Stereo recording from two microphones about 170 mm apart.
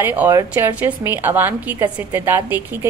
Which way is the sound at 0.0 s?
10° right (ahead or behind).